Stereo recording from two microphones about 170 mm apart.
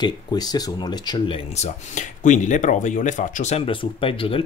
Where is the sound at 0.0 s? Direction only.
25° left (ahead or behind).